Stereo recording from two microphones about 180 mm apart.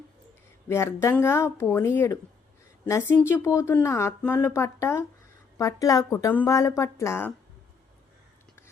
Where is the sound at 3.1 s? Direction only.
10° left (ahead or behind).